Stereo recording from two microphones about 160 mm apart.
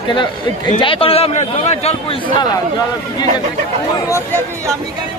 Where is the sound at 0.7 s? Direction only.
35° left (ahead or behind).